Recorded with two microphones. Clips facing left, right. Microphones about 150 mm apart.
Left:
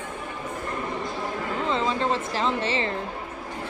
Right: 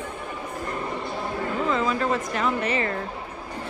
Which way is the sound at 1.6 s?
30° left (ahead or behind).